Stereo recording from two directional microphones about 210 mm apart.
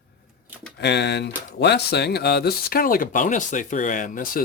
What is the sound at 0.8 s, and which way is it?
Speech, 55° left (ahead or behind).